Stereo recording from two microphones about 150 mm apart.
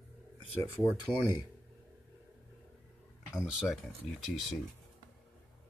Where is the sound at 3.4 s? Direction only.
Centre (ahead or behind).